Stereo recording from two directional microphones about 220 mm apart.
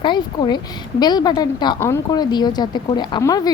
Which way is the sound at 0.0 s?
20° left (ahead or behind).